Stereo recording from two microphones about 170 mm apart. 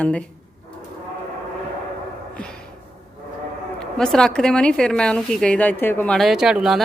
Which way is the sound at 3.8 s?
5° left (ahead or behind).